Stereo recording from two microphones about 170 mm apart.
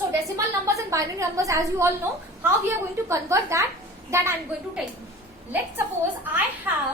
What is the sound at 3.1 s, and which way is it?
A woman's voice, 15° right (ahead or behind).